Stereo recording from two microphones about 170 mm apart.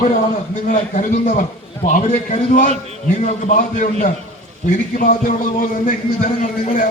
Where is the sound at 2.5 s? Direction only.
50° left (ahead or behind).